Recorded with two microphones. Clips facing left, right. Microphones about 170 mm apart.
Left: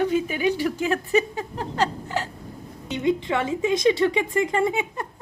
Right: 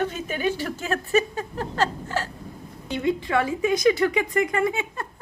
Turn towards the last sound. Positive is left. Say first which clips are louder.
# left 1 dB
turn(degrees=20)  # may be behind; listen again after turning